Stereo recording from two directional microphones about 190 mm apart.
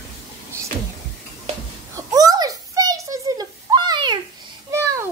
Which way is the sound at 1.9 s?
20° right (ahead or behind).